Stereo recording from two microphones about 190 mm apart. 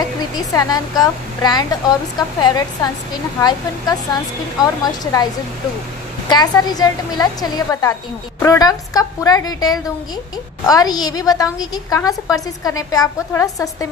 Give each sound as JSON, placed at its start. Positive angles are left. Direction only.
{"t": 0.5, "sound": "a woman's voice", "side_deg": 20}